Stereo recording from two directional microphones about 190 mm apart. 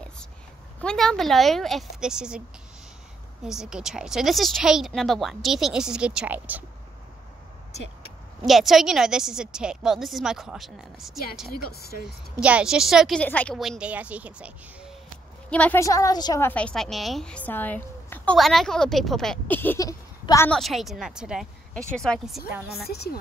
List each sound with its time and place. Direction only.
0.7 s speech: 5° left (ahead or behind)
3.4 s speech: 5° right (ahead or behind)
8.5 s speech: centre (ahead or behind)
11.4 s speech: 55° left (ahead or behind)
12.0 s speech: 5° right (ahead or behind)
15.5 s a woman's voice: 10° left (ahead or behind)
20.5 s speech: centre (ahead or behind)
22.8 s a woman's voice: 55° left (ahead or behind)